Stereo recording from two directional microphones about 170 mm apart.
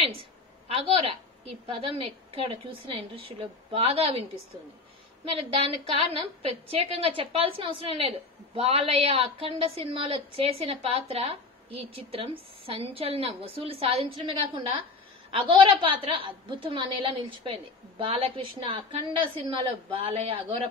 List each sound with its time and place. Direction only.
0.0 s a woman's voice: 35° right (ahead or behind)
5.3 s a woman's voice: 35° right (ahead or behind)